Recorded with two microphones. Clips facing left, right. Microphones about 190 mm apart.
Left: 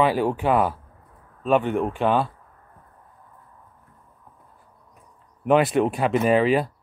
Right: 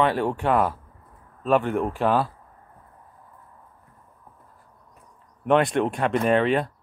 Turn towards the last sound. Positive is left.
turn(degrees=5)  # may be behind; listen again after turning